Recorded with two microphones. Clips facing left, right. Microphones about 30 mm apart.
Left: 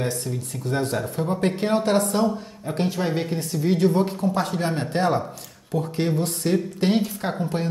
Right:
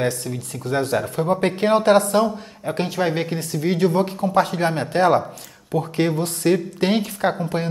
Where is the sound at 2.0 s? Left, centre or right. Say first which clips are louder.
Right 3 dB; right.